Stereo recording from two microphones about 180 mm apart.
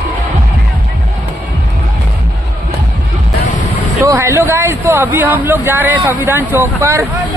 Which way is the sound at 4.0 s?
15° right (ahead or behind).